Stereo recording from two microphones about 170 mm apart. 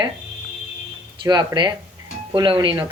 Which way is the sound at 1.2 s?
25° right (ahead or behind).